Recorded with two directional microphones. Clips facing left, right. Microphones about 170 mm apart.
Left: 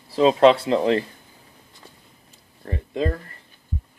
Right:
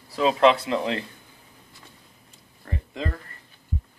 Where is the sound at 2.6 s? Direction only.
30° left (ahead or behind).